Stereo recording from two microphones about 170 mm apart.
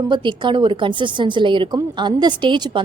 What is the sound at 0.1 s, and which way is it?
A woman's voice, 30° right (ahead or behind).